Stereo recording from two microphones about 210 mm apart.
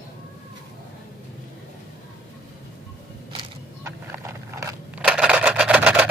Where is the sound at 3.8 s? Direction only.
15° right (ahead or behind).